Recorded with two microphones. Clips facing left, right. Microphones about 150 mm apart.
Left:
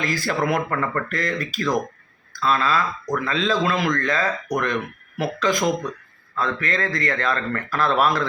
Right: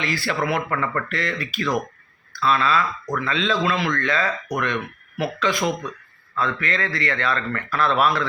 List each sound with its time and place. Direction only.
0.0 s a man's voice: 40° left (ahead or behind)